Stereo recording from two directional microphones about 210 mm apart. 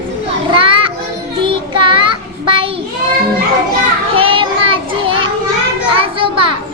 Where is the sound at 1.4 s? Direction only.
25° right (ahead or behind).